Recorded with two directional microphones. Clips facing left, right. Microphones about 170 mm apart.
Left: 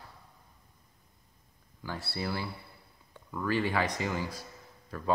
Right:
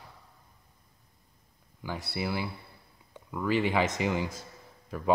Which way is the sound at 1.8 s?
15° right (ahead or behind).